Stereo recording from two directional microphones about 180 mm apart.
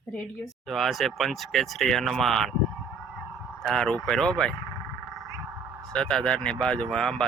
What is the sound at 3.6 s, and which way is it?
Speech, 5° left (ahead or behind).